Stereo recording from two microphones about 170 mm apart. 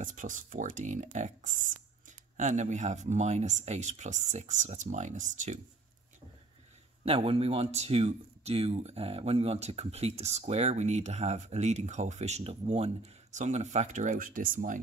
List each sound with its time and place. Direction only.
0.0 s speech: 50° right (ahead or behind)
7.1 s speech: 35° right (ahead or behind); by 14.8 s 55° right (ahead or behind)